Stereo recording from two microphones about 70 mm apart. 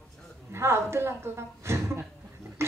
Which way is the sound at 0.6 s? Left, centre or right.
Right.